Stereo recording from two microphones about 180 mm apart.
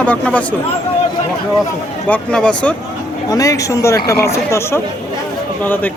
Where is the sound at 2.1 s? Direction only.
5° left (ahead or behind).